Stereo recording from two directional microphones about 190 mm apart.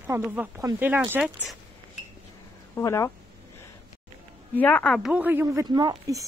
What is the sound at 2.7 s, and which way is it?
Speech, 15° left (ahead or behind).